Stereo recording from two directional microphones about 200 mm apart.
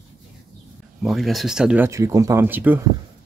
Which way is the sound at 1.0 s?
Centre (ahead or behind).